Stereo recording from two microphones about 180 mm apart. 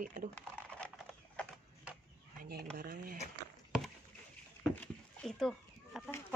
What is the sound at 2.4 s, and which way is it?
Speech, 60° right (ahead or behind).